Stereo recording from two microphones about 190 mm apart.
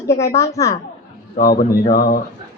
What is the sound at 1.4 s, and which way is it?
Speech, 50° left (ahead or behind).